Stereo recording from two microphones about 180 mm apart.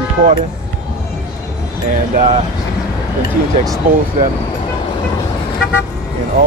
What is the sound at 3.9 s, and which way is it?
Speech, 50° right (ahead or behind).